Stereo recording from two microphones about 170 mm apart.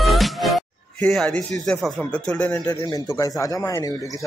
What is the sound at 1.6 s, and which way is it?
Speech, 5° left (ahead or behind).